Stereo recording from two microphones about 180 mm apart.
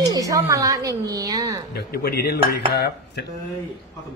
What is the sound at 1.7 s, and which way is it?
Speech, 60° left (ahead or behind).